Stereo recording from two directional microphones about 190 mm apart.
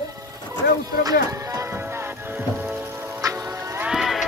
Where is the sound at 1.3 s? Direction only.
15° right (ahead or behind).